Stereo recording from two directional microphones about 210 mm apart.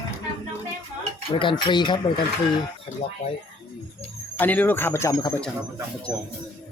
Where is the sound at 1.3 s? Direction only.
25° left (ahead or behind).